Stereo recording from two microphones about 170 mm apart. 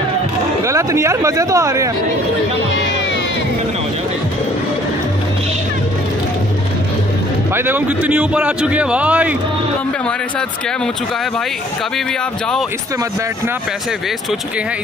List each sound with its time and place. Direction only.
0.7 s a man's voice: 15° right (ahead or behind)
7.5 s a man's voice: 10° right (ahead or behind)